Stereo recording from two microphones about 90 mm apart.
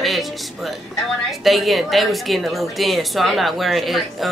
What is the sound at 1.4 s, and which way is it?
Speech, centre (ahead or behind).